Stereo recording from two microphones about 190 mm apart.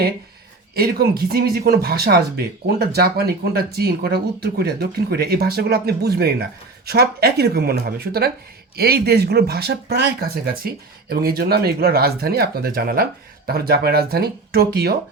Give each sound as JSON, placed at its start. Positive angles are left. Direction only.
{"t": 0.8, "sound": "speech", "side_deg": -55}